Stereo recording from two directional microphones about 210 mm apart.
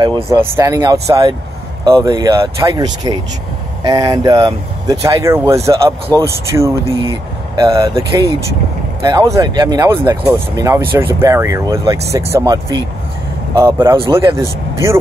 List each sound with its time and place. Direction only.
0.0 s speech: 15° right (ahead or behind)
7.0 s speech: 25° right (ahead or behind)